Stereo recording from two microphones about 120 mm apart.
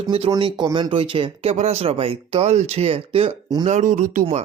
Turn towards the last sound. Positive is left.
turn(degrees=-80)